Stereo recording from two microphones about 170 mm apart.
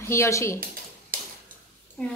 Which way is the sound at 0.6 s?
55° right (ahead or behind).